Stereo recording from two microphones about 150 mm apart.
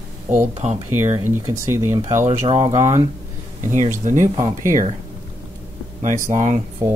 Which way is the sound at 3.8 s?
55° right (ahead or behind).